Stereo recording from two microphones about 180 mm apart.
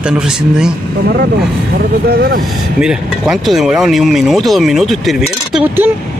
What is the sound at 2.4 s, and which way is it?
Speech, centre (ahead or behind).